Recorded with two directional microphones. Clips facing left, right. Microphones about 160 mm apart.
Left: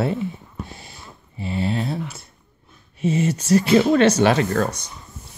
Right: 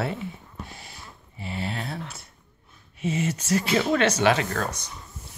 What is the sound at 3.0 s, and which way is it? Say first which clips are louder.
Speech: left 6 dB; 35° left (ahead or behind).